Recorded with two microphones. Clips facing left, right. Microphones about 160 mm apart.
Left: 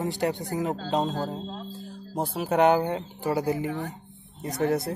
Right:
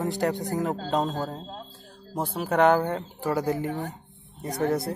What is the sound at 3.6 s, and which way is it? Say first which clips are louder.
Speech: even; 45° right (ahead or behind).